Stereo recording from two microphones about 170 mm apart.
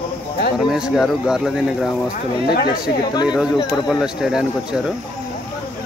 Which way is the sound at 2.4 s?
65° left (ahead or behind).